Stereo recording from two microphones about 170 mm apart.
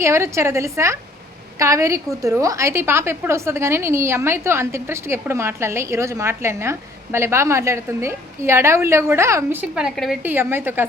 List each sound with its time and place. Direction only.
0.0 s a woman's voice: 15° right (ahead or behind); by 10.2 s centre (ahead or behind)
10.2 s a woman's voice: 10° right (ahead or behind)